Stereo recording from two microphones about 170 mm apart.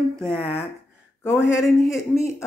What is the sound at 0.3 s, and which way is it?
Speech, 5° left (ahead or behind).